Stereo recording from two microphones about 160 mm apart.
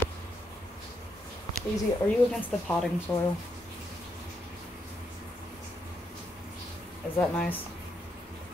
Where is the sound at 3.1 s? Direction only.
15° left (ahead or behind).